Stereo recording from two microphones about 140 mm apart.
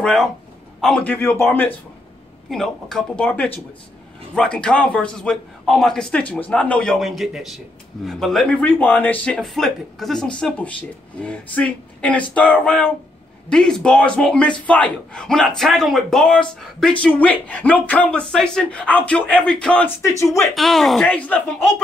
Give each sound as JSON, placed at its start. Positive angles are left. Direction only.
{"t": 0.0, "sound": "a man's voice", "side_deg": 5}
{"t": 2.5, "sound": "a man's voice", "side_deg": 5}